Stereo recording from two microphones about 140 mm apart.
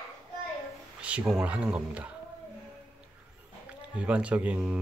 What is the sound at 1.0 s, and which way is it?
Speech, 10° right (ahead or behind).